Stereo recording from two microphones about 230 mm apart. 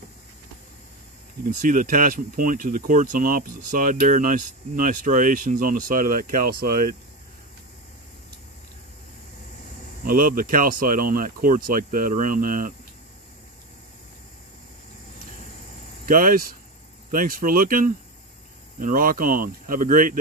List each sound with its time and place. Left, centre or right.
1.5 s speech: right
10.0 s speech: right
16.1 s speech: right